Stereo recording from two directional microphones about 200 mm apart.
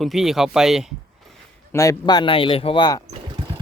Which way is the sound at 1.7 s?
15° left (ahead or behind).